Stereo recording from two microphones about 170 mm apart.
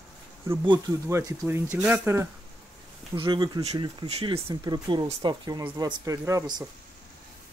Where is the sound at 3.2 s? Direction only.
25° right (ahead or behind).